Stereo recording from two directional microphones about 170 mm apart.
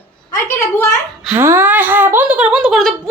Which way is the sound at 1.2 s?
15° right (ahead or behind).